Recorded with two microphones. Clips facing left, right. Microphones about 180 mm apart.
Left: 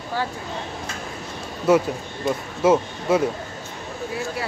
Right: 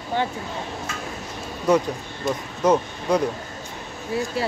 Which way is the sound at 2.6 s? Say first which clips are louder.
Left 1 dB; 5° left (ahead or behind).